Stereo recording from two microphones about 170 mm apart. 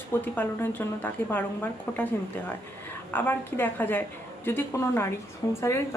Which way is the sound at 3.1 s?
10° left (ahead or behind).